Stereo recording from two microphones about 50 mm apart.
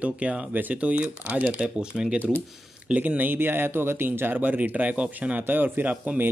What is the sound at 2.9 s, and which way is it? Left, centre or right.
Speech, right.